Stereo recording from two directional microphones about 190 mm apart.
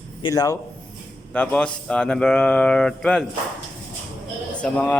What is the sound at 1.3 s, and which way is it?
A man's voice, 5° left (ahead or behind).